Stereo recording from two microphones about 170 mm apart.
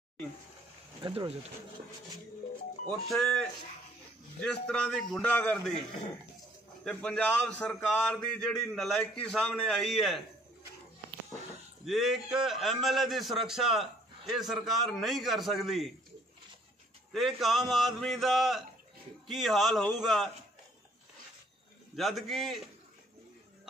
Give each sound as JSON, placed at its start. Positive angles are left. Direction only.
{"t": 1.0, "sound": "speech", "side_deg": -35}
{"t": 3.1, "sound": "a man's voice", "side_deg": 5}
{"t": 6.8, "sound": "a man's voice", "side_deg": 5}
{"t": 11.8, "sound": "a man's voice", "side_deg": 0}
{"t": 17.1, "sound": "a man's voice", "side_deg": 0}
{"t": 21.9, "sound": "a man's voice", "side_deg": 0}